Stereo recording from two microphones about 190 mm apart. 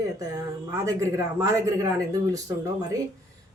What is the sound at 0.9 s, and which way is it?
Speech, 15° right (ahead or behind).